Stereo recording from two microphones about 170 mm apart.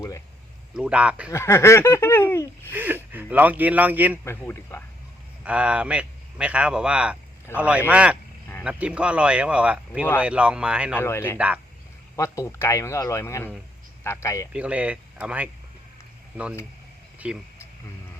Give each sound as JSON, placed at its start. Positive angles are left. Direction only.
{"t": 0.8, "sound": "speech", "side_deg": -5}
{"t": 1.3, "sound": "speech", "side_deg": 15}
{"t": 2.7, "sound": "speech", "side_deg": -10}
{"t": 4.2, "sound": "speech", "side_deg": 15}
{"t": 5.5, "sound": "speech", "side_deg": -5}
{"t": 10.9, "sound": "speech", "side_deg": 15}
{"t": 11.3, "sound": "speech", "side_deg": -10}
{"t": 12.1, "sound": "speech", "side_deg": 15}
{"t": 14.5, "sound": "speech", "side_deg": -5}
{"t": 17.2, "sound": "speech", "side_deg": -5}